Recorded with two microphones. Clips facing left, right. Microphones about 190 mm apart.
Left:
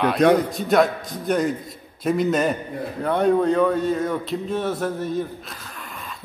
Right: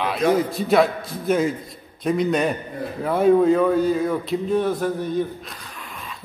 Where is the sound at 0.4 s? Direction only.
Centre (ahead or behind).